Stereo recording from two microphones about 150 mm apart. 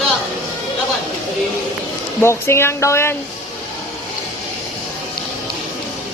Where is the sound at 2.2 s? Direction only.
15° left (ahead or behind).